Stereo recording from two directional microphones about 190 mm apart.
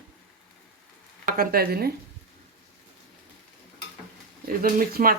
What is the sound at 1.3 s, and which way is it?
Speech, 50° right (ahead or behind).